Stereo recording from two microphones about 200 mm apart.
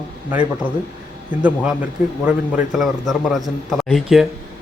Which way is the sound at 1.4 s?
5° right (ahead or behind).